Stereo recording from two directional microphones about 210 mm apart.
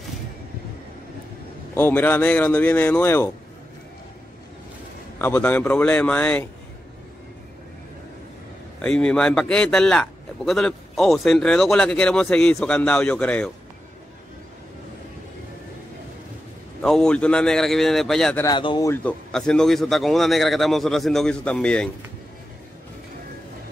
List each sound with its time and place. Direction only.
1.8 s speech: 10° left (ahead or behind)
5.2 s speech: 10° left (ahead or behind)
8.8 s a man's voice: 5° left (ahead or behind)
16.8 s a man's voice: 5° left (ahead or behind)
18.4 s speech: 20° left (ahead or behind)
19.3 s a man's voice: 5° left (ahead or behind)